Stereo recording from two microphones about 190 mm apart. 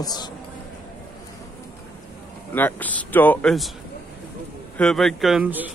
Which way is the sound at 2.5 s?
10° left (ahead or behind).